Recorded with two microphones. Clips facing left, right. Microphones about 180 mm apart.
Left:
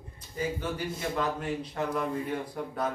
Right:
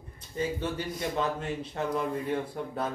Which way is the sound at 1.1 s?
25° right (ahead or behind).